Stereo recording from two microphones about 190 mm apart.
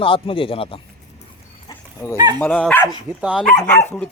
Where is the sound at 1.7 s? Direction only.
15° left (ahead or behind).